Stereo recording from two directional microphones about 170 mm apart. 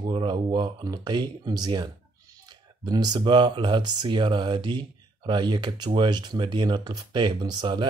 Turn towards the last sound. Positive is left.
turn(degrees=-25)  # may be behind; listen again after turning